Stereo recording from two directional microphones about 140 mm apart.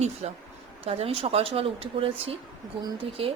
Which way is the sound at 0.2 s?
50° right (ahead or behind).